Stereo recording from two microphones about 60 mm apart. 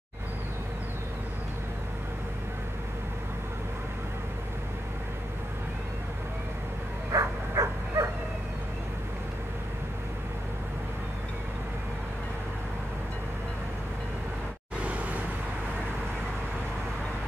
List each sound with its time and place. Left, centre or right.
7.1 s bow-wow: right